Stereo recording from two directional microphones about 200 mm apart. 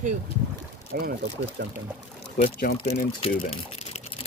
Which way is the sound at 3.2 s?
30° left (ahead or behind).